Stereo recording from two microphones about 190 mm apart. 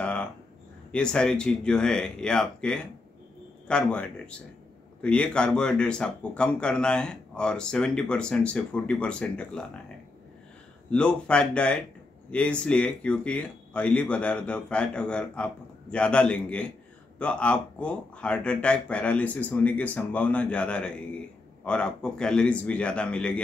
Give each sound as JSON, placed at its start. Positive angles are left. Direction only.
{"t": 0.0, "sound": "a sound", "side_deg": 5}
{"t": 0.9, "sound": "speech", "side_deg": 5}
{"t": 10.9, "sound": "speech", "side_deg": 5}